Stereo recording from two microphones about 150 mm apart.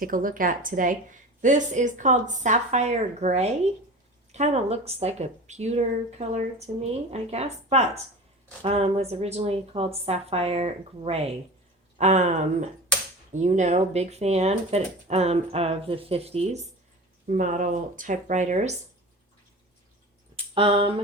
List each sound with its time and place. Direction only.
0.0 s a woman's voice: 65° right (ahead or behind); by 16.6 s 45° right (ahead or behind)
17.2 s a woman's voice: 60° right (ahead or behind)
20.3 s speech: 35° right (ahead or behind)